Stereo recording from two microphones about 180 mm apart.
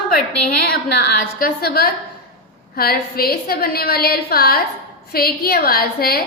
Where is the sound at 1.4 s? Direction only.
60° left (ahead or behind).